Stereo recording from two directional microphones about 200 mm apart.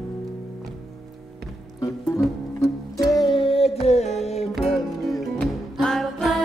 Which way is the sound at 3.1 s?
20° left (ahead or behind).